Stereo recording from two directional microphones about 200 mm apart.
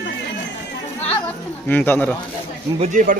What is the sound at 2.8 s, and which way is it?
Speech, 40° right (ahead or behind).